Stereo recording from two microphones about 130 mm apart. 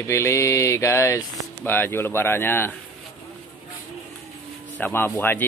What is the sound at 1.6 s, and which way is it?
Speech, 15° left (ahead or behind).